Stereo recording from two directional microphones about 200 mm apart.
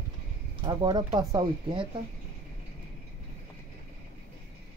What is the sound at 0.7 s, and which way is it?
Speech, 20° right (ahead or behind).